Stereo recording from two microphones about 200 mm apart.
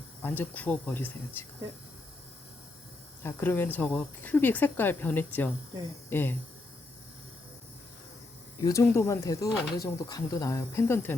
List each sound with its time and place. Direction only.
0.2 s speech: 10° left (ahead or behind)
3.2 s speech: 10° left (ahead or behind)
8.6 s speech: 15° left (ahead or behind)